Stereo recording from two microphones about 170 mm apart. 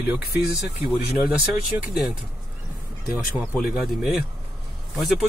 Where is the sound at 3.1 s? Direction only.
10° right (ahead or behind).